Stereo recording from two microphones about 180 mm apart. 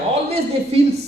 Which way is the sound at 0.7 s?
35° right (ahead or behind).